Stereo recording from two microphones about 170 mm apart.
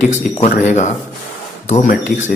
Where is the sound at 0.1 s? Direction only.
40° left (ahead or behind).